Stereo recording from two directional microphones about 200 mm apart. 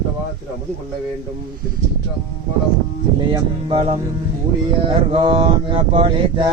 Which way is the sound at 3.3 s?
25° right (ahead or behind).